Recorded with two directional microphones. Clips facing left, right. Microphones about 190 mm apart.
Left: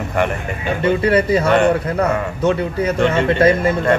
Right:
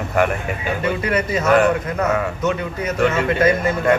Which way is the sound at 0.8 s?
30° left (ahead or behind).